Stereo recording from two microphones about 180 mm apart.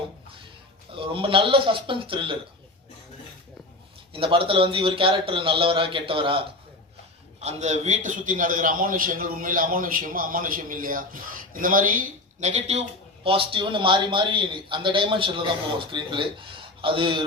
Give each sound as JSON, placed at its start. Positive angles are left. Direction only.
{"t": 0.9, "sound": "a man's voice", "side_deg": -30}
{"t": 4.1, "sound": "a man's voice", "side_deg": -30}
{"t": 7.4, "sound": "a man's voice", "side_deg": -40}